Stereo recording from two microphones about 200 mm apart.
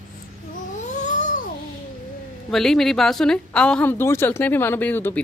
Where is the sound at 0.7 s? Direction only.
35° left (ahead or behind).